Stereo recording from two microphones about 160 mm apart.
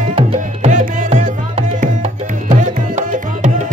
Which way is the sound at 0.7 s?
50° right (ahead or behind).